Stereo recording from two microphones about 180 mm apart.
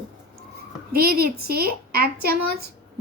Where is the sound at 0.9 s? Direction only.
55° right (ahead or behind).